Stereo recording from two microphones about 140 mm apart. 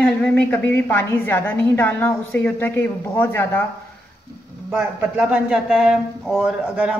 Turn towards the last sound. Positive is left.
turn(degrees=-5)  # may be behind; listen again after turning